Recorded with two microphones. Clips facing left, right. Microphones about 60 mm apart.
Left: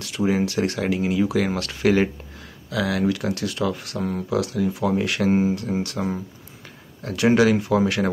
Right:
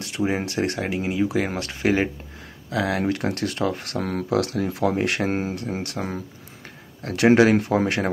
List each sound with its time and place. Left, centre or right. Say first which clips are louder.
0.4 s speech: left 2 dB; right